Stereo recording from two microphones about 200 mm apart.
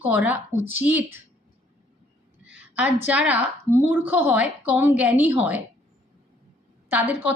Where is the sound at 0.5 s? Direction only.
80° left.